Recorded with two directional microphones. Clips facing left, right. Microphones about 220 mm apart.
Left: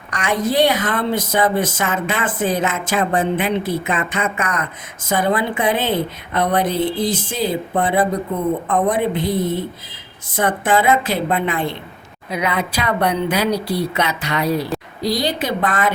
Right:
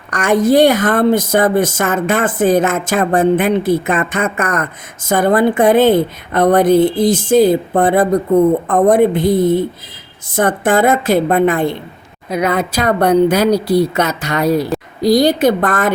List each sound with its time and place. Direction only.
0.1 s a woman's voice: 50° right (ahead or behind)
10.3 s a woman's voice: 45° right (ahead or behind)